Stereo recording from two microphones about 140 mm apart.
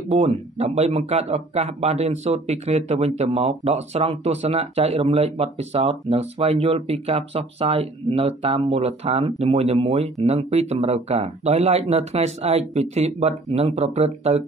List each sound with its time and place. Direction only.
0.1 s speech: 50° right (ahead or behind)